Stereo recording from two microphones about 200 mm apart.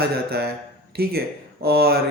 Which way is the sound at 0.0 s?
50° right (ahead or behind).